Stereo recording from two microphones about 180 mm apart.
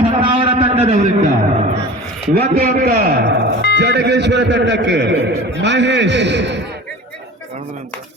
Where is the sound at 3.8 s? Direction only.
70° right (ahead or behind).